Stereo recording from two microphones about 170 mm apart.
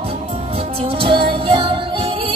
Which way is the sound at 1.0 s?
30° right (ahead or behind).